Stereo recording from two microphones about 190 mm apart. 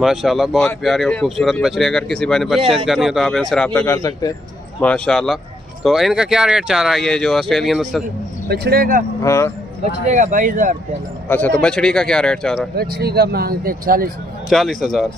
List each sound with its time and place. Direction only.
0.0 s speech: centre (ahead or behind); by 4.3 s 15° left (ahead or behind)
4.7 s speech: 5° left (ahead or behind)
8.5 s speech: 55° right (ahead or behind)
9.2 s speech: 15° left (ahead or behind)
9.8 s speech: 40° right (ahead or behind)
11.2 s speech: 10° left (ahead or behind)
12.7 s speech: 55° right (ahead or behind)
14.5 s speech: centre (ahead or behind)